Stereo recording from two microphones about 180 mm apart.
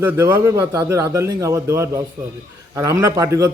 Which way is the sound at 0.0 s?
10° right (ahead or behind).